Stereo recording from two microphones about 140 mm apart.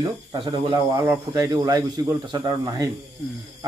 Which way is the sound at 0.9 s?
20° right (ahead or behind).